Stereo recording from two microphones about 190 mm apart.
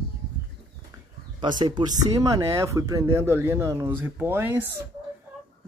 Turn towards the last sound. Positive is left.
turn(degrees=-10)  # may be behind; listen again after turning